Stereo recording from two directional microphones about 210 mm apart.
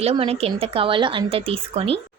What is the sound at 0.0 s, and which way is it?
Speech, 30° right (ahead or behind).